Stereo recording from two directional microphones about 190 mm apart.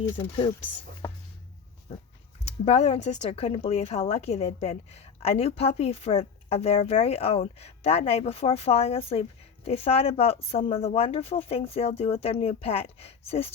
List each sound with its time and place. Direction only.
0.2 s speech: 30° left (ahead or behind)
1.9 s a sound: 30° left (ahead or behind)
2.4 s speech: 35° left (ahead or behind)